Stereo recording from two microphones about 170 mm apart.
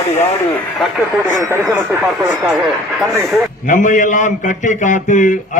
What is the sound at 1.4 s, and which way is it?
Speech, 15° right (ahead or behind).